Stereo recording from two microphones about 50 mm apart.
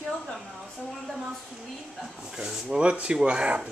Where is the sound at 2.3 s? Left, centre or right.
Centre.